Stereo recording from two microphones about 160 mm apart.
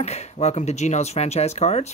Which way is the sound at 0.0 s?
45° left (ahead or behind).